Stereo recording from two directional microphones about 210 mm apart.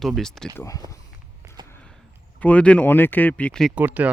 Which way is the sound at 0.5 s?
15° left (ahead or behind).